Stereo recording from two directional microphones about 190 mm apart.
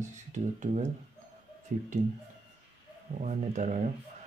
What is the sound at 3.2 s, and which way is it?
Speech, 40° right (ahead or behind).